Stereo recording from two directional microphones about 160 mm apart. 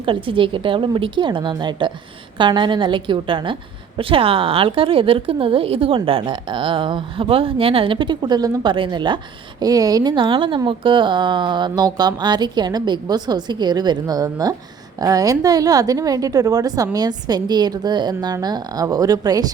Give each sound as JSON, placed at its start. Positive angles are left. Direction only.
{"t": 0.0, "sound": "a woman's voice", "side_deg": -30}